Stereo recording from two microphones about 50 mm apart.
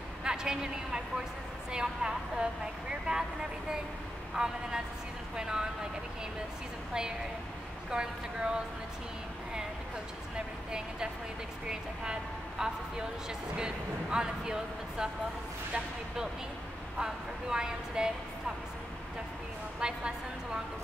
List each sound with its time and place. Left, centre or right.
0.2 s a sound: centre
1.7 s a woman's voice: centre
4.4 s a woman's voice: centre
6.9 s a woman's voice: centre
10.3 s a woman's voice: centre
17.0 s a woman's voice: centre
19.8 s a woman's voice: centre